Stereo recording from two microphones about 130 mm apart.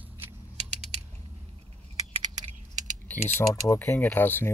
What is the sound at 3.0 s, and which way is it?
Typing, 15° left (ahead or behind).